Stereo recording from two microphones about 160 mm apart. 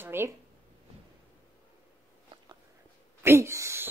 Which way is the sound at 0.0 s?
15° right (ahead or behind).